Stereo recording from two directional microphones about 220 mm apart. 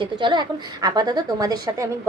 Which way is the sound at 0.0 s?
20° right (ahead or behind).